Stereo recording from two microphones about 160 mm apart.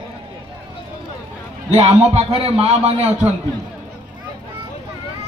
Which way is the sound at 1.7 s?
40° right (ahead or behind).